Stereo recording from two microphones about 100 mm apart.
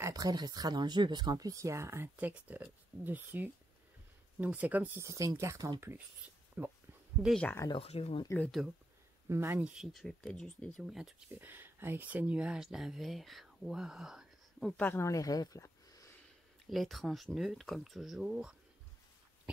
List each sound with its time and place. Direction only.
0.0 s speech: 40° right (ahead or behind)
2.1 s speech: 15° right (ahead or behind)
5.0 s speech: 35° right (ahead or behind); by 6.7 s 15° right (ahead or behind)
7.8 s speech: 85° left
8.5 s speech: 5° right (ahead or behind)
9.3 s speech: 25° right (ahead or behind)
9.6 s speech: centre (ahead or behind)
10.8 s speech: 5° right (ahead or behind)
11.3 s speech: 20° right (ahead or behind)
14.8 s speech: 20° left (ahead or behind)
15.0 s speech: 35° left (ahead or behind)
16.6 s speech: centre (ahead or behind)